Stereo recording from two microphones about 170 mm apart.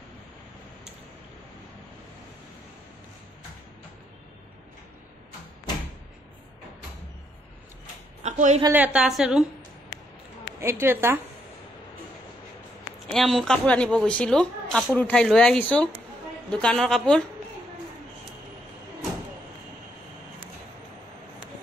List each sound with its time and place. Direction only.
8.2 s a sound: 45° right (ahead or behind)
8.7 s a woman's voice: 10° right (ahead or behind)
10.6 s a woman's voice: 15° right (ahead or behind)
13.1 s a woman's voice: centre (ahead or behind)